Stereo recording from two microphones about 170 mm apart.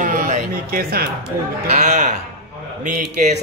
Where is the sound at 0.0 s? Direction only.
50° right (ahead or behind).